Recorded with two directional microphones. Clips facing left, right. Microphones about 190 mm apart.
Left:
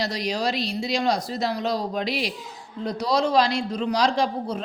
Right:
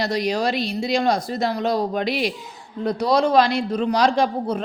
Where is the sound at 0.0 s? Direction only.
55° right (ahead or behind).